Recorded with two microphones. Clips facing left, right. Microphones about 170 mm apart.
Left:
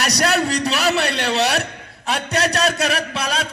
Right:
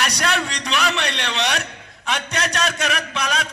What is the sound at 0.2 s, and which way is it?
A man's voice, 35° left (ahead or behind).